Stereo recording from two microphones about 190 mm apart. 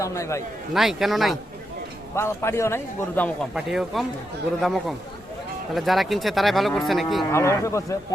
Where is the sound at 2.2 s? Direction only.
15° left (ahead or behind).